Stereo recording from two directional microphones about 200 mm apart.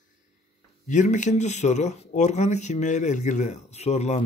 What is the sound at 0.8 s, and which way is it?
Speech, 40° left (ahead or behind).